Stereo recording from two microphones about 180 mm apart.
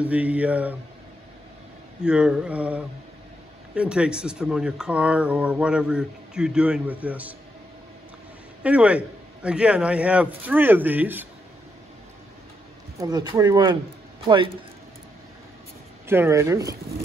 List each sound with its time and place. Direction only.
0.0 s a man's voice: 10° right (ahead or behind)
2.0 s a man's voice: 5° right (ahead or behind)
8.6 s a man's voice: 5° right (ahead or behind)
13.0 s speech: 25° right (ahead or behind)
16.1 s a man's voice: 15° right (ahead or behind)